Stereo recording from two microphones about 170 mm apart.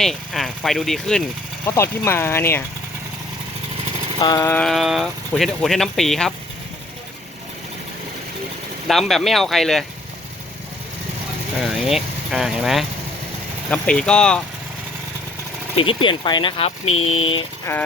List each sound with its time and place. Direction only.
0.0 s speech: centre (ahead or behind)
4.2 s speech: 20° left (ahead or behind)
4.5 s speech: centre (ahead or behind)
8.9 s speech: centre (ahead or behind)
11.6 s speech: centre (ahead or behind)
15.7 s speech: 30° left (ahead or behind)
17.7 s speech: 15° left (ahead or behind)